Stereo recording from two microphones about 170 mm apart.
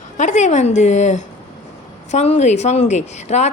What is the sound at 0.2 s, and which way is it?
A woman's voice, 45° left (ahead or behind).